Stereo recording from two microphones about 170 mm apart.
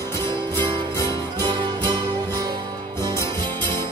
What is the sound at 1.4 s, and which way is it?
Music, 25° right (ahead or behind).